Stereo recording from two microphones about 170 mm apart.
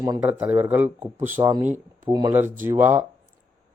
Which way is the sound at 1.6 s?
45° right (ahead or behind).